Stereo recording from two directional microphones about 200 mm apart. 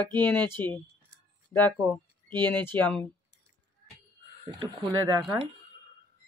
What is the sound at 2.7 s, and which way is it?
Speech, 10° left (ahead or behind).